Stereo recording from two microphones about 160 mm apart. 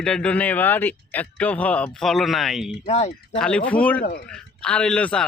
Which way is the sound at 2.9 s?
40° left (ahead or behind).